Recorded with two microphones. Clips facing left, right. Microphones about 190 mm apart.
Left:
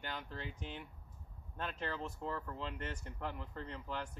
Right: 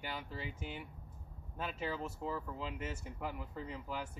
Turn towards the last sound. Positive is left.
turn(degrees=-5)  # may be behind; listen again after turning